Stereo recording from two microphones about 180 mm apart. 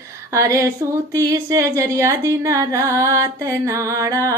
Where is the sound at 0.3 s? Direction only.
15° right (ahead or behind).